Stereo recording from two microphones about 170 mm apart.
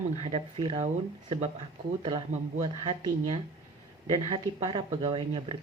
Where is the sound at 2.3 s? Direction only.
45° right (ahead or behind).